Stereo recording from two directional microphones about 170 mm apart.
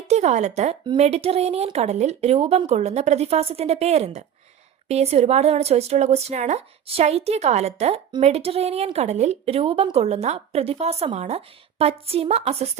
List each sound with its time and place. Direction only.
0.1 s a woman's voice: 45° right (ahead or behind)